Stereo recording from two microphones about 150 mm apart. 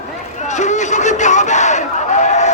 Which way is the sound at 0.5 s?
55° left (ahead or behind).